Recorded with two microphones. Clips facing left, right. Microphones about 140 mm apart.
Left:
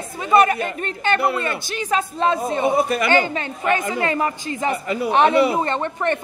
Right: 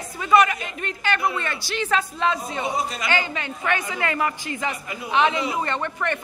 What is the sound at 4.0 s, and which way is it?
Speech, 30° left (ahead or behind).